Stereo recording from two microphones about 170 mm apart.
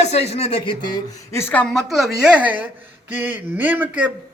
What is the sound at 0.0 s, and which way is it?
Speech, 40° left (ahead or behind).